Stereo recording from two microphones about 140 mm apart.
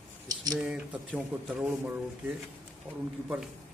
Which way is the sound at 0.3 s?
30° right (ahead or behind).